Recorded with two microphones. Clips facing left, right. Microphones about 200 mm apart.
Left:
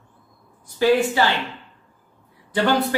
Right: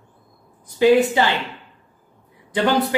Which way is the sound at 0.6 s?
20° right (ahead or behind).